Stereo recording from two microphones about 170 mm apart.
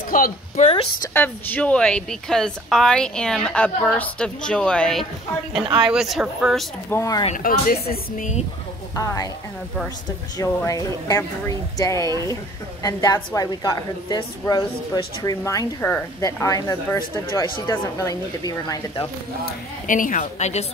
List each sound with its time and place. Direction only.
0.1 s a woman's voice: 55° left (ahead or behind)
1.1 s a woman's voice: 10° left (ahead or behind)
6.9 s speech: 20° left (ahead or behind)
7.2 s speech: 55° left (ahead or behind)
8.9 s speech: 20° left (ahead or behind)
10.3 s speech: 20° left (ahead or behind)
19.4 s a woman's voice: 50° left (ahead or behind)